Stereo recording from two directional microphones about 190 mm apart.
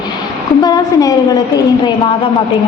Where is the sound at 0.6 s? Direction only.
20° left (ahead or behind).